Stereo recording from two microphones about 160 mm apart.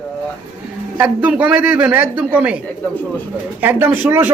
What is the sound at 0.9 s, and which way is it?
Speech, 10° right (ahead or behind).